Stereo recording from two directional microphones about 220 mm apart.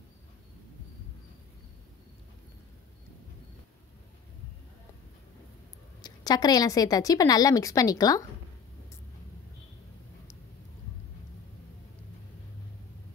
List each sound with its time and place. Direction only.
6.0 s a woman's voice: 20° left (ahead or behind)